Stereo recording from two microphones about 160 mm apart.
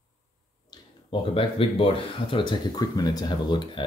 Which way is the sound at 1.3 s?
35° left (ahead or behind).